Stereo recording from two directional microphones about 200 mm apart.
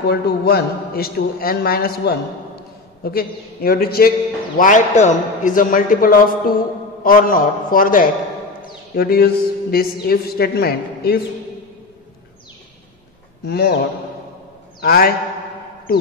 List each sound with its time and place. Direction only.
0.0 s a man's voice: 50° left (ahead or behind)
4.6 s a man's voice: 40° left (ahead or behind)
13.5 s a man's voice: 55° left (ahead or behind)
14.8 s a man's voice: 50° left (ahead or behind)